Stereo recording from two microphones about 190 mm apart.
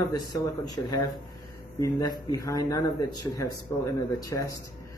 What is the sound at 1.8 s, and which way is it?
Speech, 20° left (ahead or behind).